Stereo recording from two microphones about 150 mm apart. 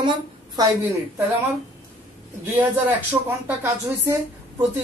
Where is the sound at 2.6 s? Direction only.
10° right (ahead or behind).